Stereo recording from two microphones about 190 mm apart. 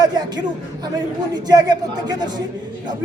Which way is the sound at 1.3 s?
20° right (ahead or behind).